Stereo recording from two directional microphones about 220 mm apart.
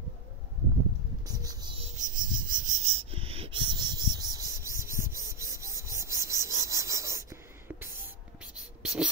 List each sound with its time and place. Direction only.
1.2 s a sound: 15° right (ahead or behind)
2.0 s cricket: 35° right (ahead or behind); by 7.9 s 10° right (ahead or behind)
8.8 s beatboxing: 5° right (ahead or behind)